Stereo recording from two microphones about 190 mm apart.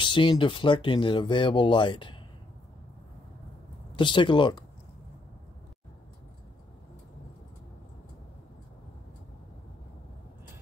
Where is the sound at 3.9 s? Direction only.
25° left (ahead or behind).